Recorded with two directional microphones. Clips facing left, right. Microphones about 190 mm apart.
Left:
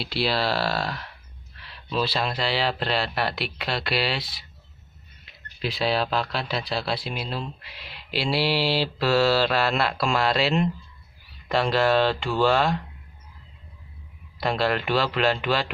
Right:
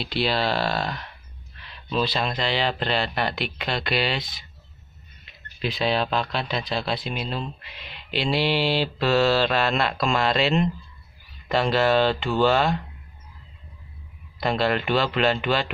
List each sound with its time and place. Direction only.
0.0 s speech: 5° left (ahead or behind)
14.4 s speech: centre (ahead or behind)